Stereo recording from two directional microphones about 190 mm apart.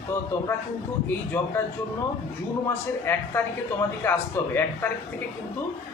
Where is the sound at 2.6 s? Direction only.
10° left (ahead or behind).